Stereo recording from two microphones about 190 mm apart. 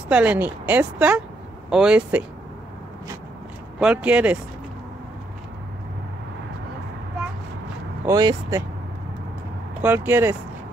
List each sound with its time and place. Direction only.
0.1 s speech: 10° right (ahead or behind)
3.8 s speech: 5° right (ahead or behind)
8.0 s speech: 20° right (ahead or behind)
9.8 s speech: 10° right (ahead or behind)